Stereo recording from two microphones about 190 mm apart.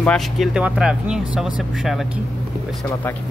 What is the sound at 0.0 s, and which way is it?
Speech, 5° left (ahead or behind).